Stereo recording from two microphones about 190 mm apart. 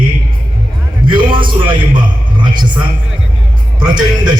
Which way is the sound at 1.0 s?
25° right (ahead or behind).